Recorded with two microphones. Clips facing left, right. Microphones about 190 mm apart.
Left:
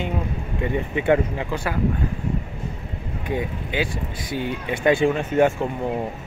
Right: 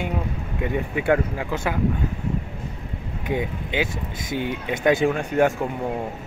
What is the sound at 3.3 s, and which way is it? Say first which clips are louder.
A man's voice: right 1 dB; 20° right (ahead or behind).